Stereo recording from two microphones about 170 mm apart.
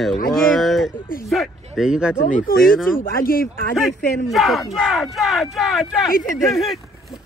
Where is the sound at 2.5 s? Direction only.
60° left (ahead or behind).